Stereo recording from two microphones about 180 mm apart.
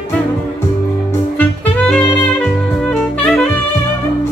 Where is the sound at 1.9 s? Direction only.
5° left (ahead or behind).